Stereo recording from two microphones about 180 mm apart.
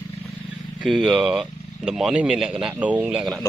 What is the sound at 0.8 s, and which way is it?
Speech, centre (ahead or behind).